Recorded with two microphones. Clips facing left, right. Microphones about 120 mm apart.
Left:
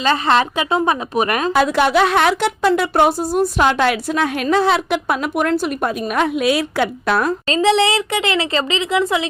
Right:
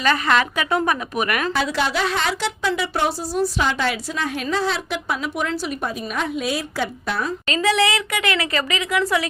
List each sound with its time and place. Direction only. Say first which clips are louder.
0.0 s speech: left 3 dB; 30° left (ahead or behind)
1.5 s speech: left 11 dB; 55° left (ahead or behind); by 7.3 s 70° left (ahead or behind)
7.4 s speech: left 3 dB; 30° left (ahead or behind)